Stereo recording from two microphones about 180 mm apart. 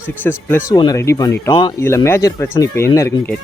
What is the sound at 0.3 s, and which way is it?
Speech, 15° left (ahead or behind).